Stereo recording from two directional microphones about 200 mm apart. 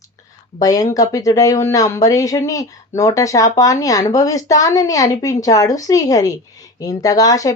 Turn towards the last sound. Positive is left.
turn(degrees=15)  # may be behind; listen again after turning